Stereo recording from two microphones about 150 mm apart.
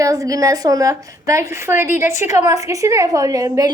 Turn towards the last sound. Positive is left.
turn(degrees=-25)  # may be behind; listen again after turning